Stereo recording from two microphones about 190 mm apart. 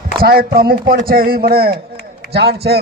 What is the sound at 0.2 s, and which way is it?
A man's voice, 50° right (ahead or behind).